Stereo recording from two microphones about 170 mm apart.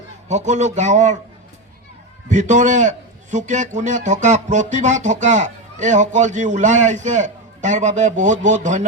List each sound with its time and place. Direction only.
0.3 s a man's voice: 45° right (ahead or behind)
2.3 s a man's voice: 45° right (ahead or behind)